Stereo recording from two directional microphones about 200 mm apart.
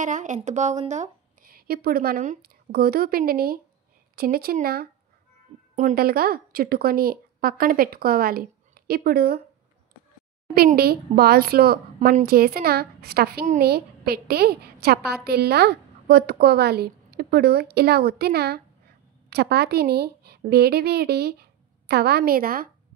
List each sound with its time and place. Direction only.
0.0 s a woman's voice: 40° right (ahead or behind)
10.5 s a woman's voice: 50° right (ahead or behind)